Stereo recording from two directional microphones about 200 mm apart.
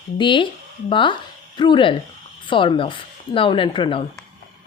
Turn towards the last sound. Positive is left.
turn(degrees=25)  # may be behind; listen again after turning